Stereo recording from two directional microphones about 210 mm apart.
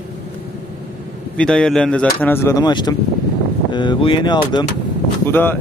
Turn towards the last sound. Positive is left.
turn(degrees=10)  # may be behind; listen again after turning